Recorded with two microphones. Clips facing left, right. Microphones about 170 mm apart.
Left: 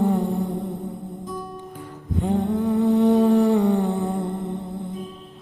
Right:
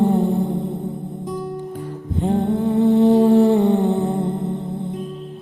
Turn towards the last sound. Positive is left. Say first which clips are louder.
# right 4 dB
turn(degrees=-25)  # may be behind; listen again after turning